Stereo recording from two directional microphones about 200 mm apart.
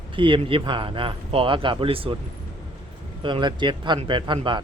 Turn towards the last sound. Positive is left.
turn(degrees=-25)  # may be behind; listen again after turning